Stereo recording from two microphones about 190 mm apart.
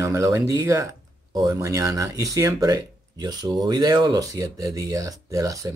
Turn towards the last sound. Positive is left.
turn(degrees=-15)  # may be behind; listen again after turning